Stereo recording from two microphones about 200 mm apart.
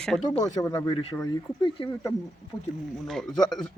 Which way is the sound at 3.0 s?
Centre (ahead or behind).